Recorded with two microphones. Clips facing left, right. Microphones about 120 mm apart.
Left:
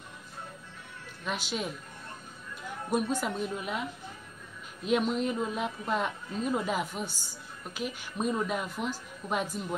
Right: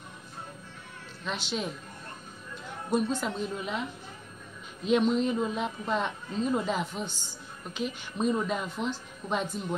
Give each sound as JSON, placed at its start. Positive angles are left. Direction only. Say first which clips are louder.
{"t": 1.2, "sound": "a woman's voice", "louder": "right 1 dB", "side_deg": 10}
{"t": 2.9, "sound": "a woman's voice", "louder": "right 1 dB", "side_deg": 10}
{"t": 4.8, "sound": "a woman's voice", "louder": "right 3 dB", "side_deg": 5}